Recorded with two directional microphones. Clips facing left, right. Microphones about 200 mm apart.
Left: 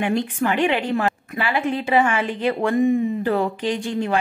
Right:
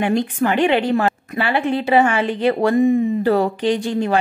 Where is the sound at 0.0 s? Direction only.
35° right (ahead or behind).